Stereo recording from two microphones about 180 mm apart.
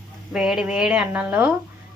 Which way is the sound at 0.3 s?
5° right (ahead or behind).